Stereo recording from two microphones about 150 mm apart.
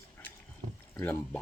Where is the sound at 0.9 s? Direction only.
15° left (ahead or behind).